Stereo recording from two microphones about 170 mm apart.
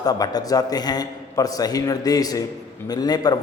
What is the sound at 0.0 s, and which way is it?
A man's voice, 25° left (ahead or behind).